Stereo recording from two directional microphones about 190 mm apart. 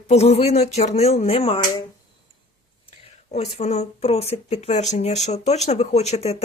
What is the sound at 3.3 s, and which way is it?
Speech, 35° left (ahead or behind).